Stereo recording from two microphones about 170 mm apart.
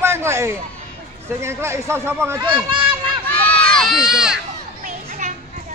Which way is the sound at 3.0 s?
10° left (ahead or behind).